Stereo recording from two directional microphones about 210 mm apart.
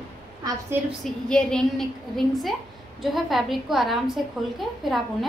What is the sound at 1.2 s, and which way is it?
A woman's voice, 5° left (ahead or behind).